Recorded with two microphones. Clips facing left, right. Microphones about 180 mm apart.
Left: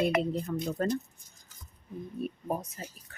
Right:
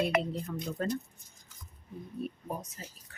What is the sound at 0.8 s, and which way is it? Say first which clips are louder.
Speech: left 3 dB; 45° left (ahead or behind).